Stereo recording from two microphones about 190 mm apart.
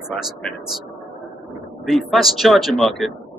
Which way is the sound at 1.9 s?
Centre (ahead or behind).